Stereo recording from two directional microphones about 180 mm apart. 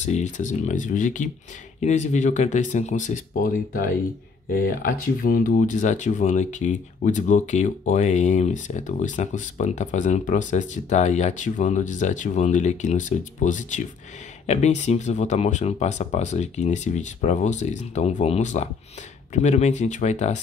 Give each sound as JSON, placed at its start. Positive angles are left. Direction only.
{"t": 0.0, "sound": "speech", "side_deg": 40}